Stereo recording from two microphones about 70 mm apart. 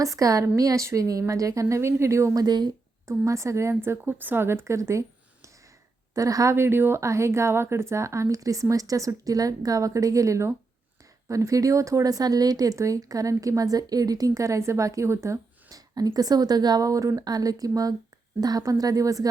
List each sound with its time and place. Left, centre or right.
0.0 s speech: right
2.3 s speech: right
3.1 s speech: right
15.7 s speech: right